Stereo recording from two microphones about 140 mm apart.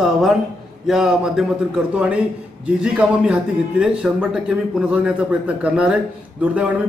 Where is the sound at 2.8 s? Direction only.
5° right (ahead or behind).